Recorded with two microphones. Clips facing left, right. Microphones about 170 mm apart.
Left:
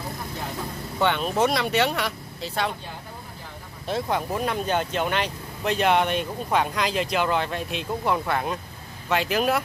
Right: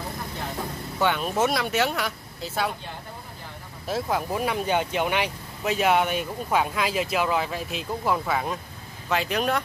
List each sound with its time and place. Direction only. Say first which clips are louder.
0.9 s speech: left 1 dB; 5° right (ahead or behind)
3.8 s speech: left 1 dB; 5° right (ahead or behind)